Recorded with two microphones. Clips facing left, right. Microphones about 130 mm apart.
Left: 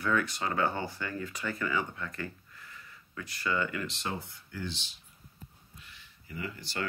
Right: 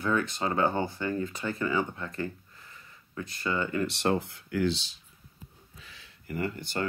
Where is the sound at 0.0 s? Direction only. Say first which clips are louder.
Right 2 dB; 25° right (ahead or behind).